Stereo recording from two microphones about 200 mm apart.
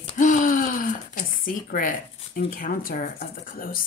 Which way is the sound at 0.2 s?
40° left (ahead or behind).